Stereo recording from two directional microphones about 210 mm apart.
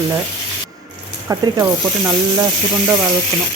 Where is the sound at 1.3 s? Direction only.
15° right (ahead or behind).